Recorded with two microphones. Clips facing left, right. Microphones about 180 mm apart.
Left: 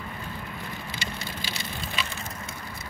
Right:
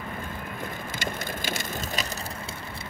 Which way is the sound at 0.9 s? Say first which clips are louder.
Right 3 dB; 50° right (ahead or behind).